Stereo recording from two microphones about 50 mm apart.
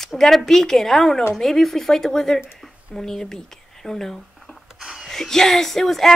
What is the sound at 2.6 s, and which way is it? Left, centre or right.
Whispering, centre.